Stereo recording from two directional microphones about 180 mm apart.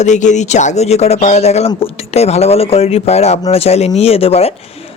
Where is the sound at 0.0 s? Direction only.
40° left (ahead or behind).